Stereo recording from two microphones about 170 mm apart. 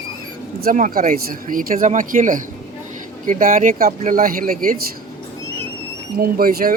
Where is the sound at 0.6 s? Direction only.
55° right (ahead or behind).